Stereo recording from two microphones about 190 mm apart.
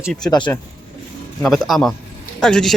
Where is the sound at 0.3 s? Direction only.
25° left (ahead or behind).